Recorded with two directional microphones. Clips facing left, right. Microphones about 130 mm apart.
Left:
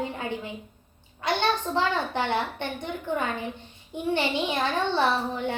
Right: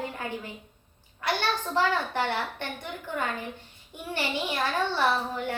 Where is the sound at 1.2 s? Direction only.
20° left (ahead or behind).